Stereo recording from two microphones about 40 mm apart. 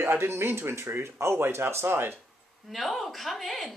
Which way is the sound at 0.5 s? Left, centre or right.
Right.